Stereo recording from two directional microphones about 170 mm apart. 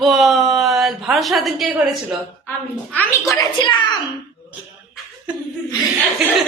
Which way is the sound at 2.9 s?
15° left (ahead or behind).